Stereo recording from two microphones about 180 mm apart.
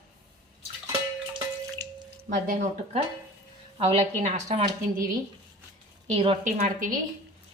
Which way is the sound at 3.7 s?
35° right (ahead or behind).